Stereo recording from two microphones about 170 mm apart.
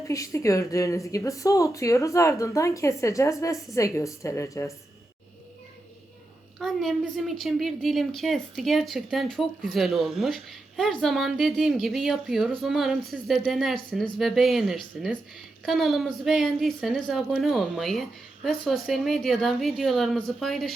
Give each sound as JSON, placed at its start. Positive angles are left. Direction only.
{"t": 0.1, "sound": "speech", "side_deg": 20}
{"t": 6.6, "sound": "a woman's voice", "side_deg": 0}